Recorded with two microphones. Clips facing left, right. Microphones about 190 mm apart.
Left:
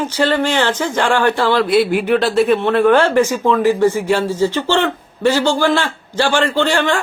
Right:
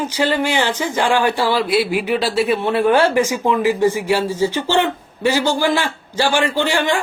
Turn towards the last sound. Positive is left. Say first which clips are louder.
# left 2 dB
turn(degrees=-10)  # may be behind; listen again after turning